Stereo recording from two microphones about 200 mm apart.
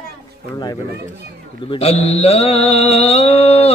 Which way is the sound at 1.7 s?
30° left (ahead or behind).